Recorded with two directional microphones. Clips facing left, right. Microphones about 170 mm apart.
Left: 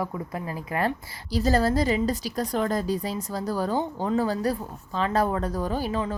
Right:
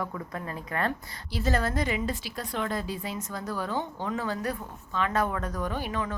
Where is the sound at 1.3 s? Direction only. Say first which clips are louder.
Left 6 dB; 35° left (ahead or behind).